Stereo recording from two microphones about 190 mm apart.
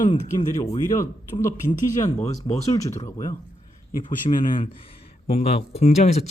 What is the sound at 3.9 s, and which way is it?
Speech, 45° left (ahead or behind).